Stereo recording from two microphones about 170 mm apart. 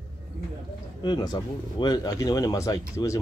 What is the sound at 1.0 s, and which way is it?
Speech, 25° left (ahead or behind).